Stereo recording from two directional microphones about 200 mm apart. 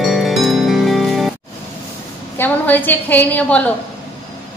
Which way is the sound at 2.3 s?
10° left (ahead or behind).